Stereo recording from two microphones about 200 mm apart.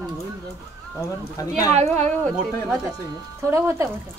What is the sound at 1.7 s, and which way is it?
Speech, 35° right (ahead or behind).